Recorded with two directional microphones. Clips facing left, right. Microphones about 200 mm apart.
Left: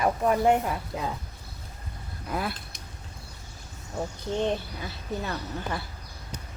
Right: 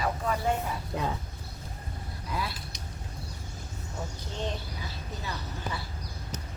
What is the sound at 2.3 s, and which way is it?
Speech, 55° left (ahead or behind).